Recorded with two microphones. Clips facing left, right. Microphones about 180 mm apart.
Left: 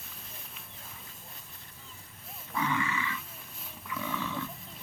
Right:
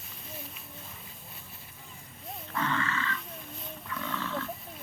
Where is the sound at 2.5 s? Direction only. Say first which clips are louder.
Even; 10° left (ahead or behind).